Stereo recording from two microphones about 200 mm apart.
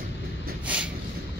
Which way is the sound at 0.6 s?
5° right (ahead or behind).